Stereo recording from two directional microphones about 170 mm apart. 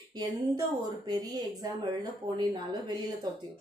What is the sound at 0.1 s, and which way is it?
Speech, 25° right (ahead or behind).